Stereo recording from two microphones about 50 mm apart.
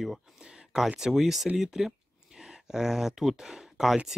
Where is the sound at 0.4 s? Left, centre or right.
Centre.